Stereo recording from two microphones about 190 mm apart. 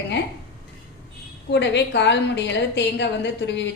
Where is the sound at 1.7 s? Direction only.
65° left (ahead or behind).